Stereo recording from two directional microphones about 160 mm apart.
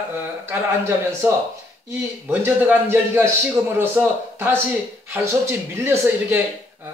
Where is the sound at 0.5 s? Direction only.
15° right (ahead or behind).